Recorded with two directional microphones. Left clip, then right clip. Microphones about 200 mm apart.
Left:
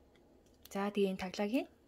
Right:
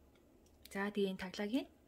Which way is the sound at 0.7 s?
15° left (ahead or behind).